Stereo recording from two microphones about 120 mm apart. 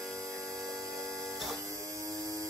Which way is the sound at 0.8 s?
25° right (ahead or behind).